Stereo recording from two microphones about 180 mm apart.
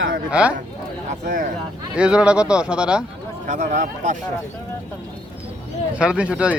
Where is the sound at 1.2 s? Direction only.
45° right (ahead or behind).